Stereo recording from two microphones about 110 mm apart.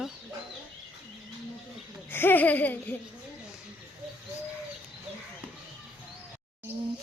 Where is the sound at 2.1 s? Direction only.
20° left (ahead or behind).